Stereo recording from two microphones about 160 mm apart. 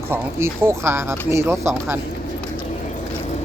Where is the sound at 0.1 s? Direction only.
15° right (ahead or behind).